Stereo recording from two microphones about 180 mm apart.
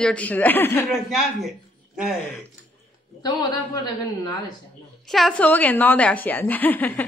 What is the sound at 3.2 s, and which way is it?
A man's voice, 20° left (ahead or behind).